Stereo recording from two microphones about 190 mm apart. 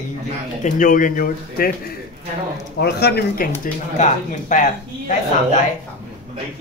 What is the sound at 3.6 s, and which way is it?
Speech, 40° left (ahead or behind).